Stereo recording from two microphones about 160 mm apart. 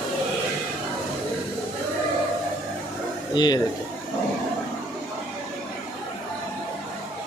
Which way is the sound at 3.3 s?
25° left (ahead or behind).